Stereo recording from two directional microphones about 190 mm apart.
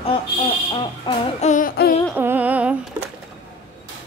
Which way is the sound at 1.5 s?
50° left (ahead or behind).